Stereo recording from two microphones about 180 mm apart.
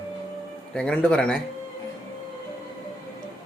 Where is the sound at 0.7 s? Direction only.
5° left (ahead or behind).